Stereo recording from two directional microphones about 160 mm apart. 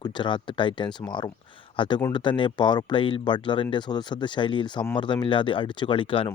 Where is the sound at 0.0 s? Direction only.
30° left (ahead or behind).